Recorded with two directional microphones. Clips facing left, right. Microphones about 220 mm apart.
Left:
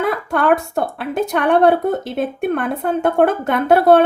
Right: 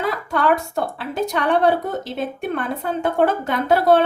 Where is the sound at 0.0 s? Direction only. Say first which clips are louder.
Left 3 dB; 55° left (ahead or behind).